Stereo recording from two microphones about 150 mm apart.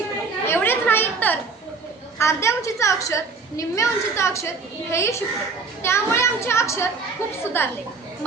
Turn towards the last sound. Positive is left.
turn(degrees=15)  # may be behind; listen again after turning